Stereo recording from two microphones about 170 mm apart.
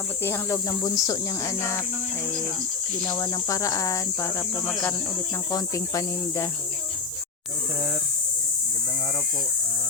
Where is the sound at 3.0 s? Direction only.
20° left (ahead or behind).